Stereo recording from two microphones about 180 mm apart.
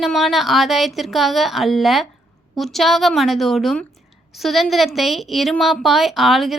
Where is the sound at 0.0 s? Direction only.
Centre (ahead or behind).